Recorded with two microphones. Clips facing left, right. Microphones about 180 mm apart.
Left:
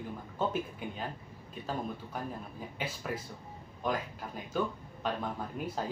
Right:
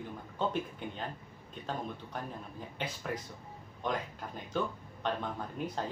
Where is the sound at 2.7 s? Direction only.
5° left (ahead or behind).